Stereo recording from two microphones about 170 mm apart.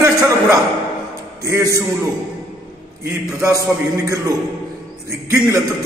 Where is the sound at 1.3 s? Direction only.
15° right (ahead or behind).